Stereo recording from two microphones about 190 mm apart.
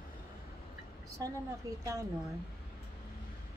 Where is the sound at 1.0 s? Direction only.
15° right (ahead or behind).